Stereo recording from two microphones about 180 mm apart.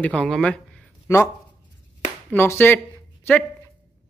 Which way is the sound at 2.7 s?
10° left (ahead or behind).